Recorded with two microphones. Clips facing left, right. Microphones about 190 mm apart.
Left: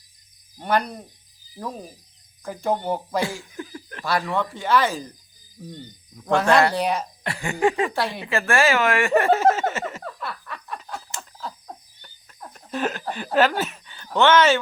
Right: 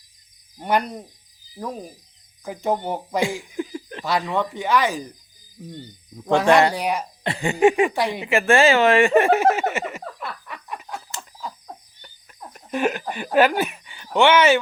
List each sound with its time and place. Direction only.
0.6 s speech: 15° right (ahead or behind)
2.4 s speech: 15° right (ahead or behind)
7.3 s speech: 20° right (ahead or behind)
12.5 s speech: 10° right (ahead or behind)